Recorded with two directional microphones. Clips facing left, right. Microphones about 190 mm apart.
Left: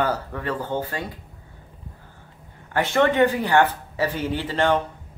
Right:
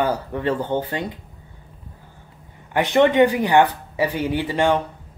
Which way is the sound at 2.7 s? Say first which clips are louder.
Right 4 dB; 15° right (ahead or behind).